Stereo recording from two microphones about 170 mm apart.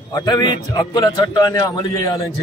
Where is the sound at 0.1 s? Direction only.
25° left (ahead or behind).